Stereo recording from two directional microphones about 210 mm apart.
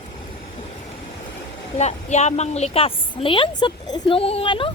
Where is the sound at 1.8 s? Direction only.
30° left (ahead or behind).